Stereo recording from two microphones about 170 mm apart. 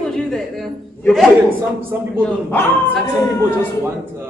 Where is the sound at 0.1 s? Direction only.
5° left (ahead or behind).